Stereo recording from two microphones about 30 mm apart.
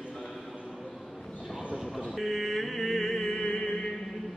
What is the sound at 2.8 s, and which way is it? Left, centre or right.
Music, centre.